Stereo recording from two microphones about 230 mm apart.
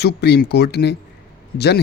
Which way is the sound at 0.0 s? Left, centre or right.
Left.